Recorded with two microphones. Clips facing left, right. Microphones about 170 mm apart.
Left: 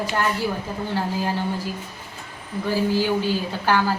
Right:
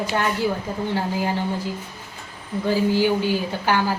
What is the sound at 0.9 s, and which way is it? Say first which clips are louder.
Speech: even; 15° right (ahead or behind).